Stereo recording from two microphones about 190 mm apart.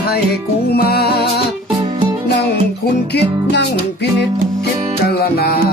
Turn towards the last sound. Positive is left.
turn(degrees=55)  # may be behind; listen again after turning